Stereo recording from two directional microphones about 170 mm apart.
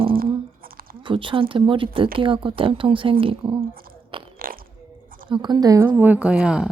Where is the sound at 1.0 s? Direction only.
30° right (ahead or behind).